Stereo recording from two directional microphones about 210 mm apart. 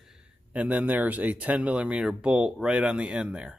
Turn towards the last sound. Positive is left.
turn(degrees=-5)  # may be behind; listen again after turning